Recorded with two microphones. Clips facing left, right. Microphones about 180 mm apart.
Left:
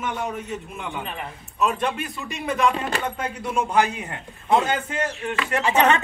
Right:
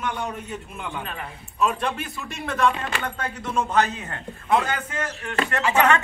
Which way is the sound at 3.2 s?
10° left (ahead or behind).